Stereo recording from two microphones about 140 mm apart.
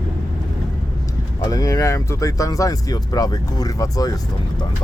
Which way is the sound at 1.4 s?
25° left (ahead or behind).